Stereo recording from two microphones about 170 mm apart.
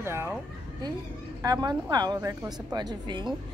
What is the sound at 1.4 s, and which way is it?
Speech, 20° right (ahead or behind).